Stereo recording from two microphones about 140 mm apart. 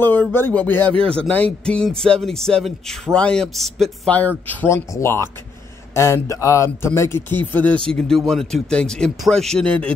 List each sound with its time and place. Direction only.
0.0 s speech: 15° left (ahead or behind)
0.9 s speech: 40° right (ahead or behind)
1.3 s speech: 10° left (ahead or behind)